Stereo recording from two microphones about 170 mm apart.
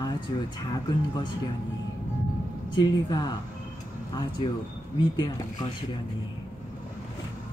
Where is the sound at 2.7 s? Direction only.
25° left (ahead or behind).